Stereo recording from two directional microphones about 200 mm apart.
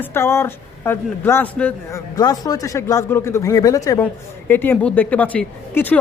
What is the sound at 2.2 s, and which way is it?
A man's voice, 20° left (ahead or behind).